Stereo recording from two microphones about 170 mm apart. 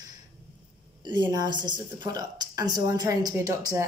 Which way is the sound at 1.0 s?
25° right (ahead or behind).